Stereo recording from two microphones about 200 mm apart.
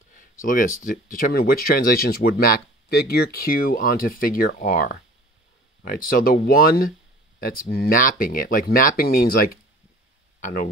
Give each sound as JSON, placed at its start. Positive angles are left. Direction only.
{"t": 0.1, "sound": "speech", "side_deg": 45}